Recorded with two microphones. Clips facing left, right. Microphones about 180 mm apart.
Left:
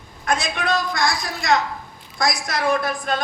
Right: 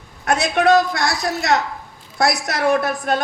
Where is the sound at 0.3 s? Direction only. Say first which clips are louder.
Right 7 dB; 65° right (ahead or behind).